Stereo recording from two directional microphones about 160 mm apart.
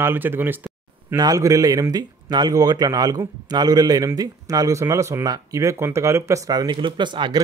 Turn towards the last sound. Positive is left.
turn(degrees=-30)  # may be behind; listen again after turning